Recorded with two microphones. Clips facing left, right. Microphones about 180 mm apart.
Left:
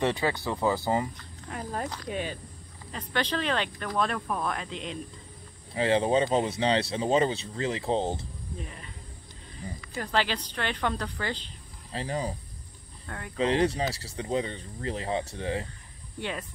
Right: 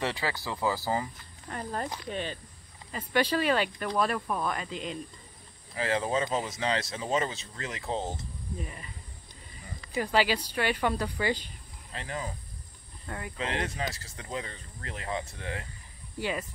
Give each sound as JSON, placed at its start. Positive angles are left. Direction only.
{"t": 0.0, "sound": "speech", "side_deg": 20}
{"t": 1.1, "sound": "speech", "side_deg": 0}
{"t": 2.9, "sound": "a woman's voice", "side_deg": -10}
{"t": 5.8, "sound": "speech", "side_deg": 30}
{"t": 8.5, "sound": "speech", "side_deg": 0}
{"t": 9.9, "sound": "a woman's voice", "side_deg": -10}
{"t": 11.9, "sound": "speech", "side_deg": 35}
{"t": 13.0, "sound": "speech", "side_deg": -5}
{"t": 13.4, "sound": "speech", "side_deg": 30}
{"t": 16.2, "sound": "speech", "side_deg": -5}